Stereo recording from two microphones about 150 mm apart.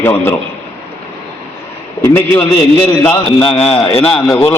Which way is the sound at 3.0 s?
10° left (ahead or behind).